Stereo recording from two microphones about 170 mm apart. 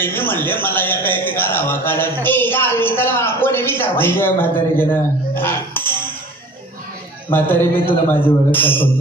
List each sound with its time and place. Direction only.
0.0 s a man's voice: 10° left (ahead or behind)
7.2 s a man's voice: 10° left (ahead or behind)